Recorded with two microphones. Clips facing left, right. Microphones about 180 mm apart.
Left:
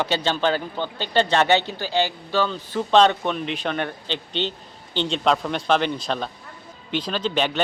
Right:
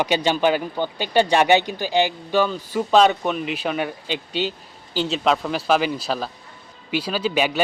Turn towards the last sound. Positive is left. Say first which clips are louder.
# right 2 dB
turn(degrees=-10)  # may be behind; listen again after turning